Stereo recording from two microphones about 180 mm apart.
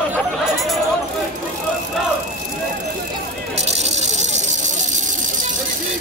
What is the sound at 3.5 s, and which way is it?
Rattle, 40° right (ahead or behind).